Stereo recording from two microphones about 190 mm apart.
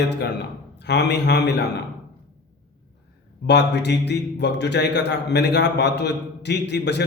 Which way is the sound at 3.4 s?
65° left (ahead or behind).